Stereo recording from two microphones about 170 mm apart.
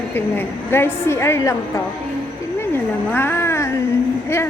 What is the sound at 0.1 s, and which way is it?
A woman's voice, 10° left (ahead or behind).